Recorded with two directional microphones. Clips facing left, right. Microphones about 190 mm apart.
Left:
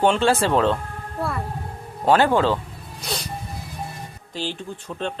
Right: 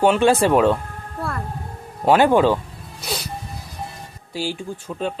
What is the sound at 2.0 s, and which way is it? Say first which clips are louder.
Speech: right 3 dB; 10° right (ahead or behind).